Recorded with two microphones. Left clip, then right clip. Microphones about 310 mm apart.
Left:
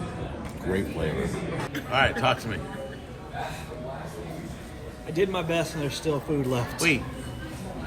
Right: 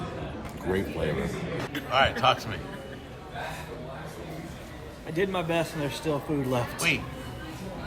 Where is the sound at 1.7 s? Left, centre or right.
Centre.